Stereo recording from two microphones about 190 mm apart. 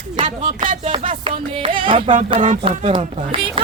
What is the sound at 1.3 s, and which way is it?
Speech, 25° right (ahead or behind).